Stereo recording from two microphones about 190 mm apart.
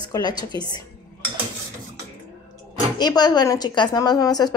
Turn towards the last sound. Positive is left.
turn(degrees=20)  # may be behind; listen again after turning